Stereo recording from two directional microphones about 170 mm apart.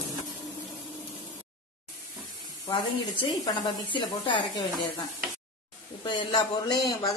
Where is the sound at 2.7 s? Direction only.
30° left (ahead or behind).